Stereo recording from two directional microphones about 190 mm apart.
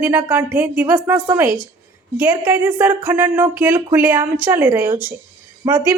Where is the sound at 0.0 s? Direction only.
10° right (ahead or behind).